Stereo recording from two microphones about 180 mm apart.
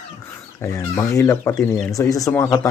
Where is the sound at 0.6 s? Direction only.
15° left (ahead or behind).